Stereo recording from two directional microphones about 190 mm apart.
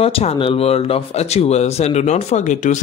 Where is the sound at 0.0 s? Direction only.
30° left (ahead or behind).